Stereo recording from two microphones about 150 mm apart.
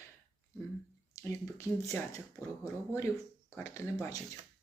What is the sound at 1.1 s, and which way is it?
Speech, 20° left (ahead or behind).